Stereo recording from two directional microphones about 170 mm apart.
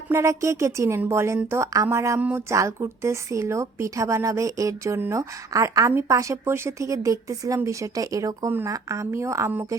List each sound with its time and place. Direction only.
0.1 s a woman's voice: 15° right (ahead or behind)